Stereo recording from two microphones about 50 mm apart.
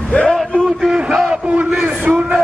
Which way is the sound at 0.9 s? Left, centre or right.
Centre.